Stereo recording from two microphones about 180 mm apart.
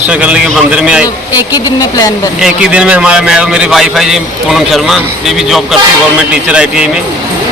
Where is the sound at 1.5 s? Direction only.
20° left (ahead or behind).